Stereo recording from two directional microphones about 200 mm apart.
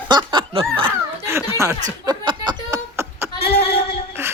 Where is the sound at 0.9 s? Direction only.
10° right (ahead or behind).